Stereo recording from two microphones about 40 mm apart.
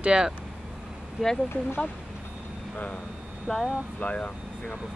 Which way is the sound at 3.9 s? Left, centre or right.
Left.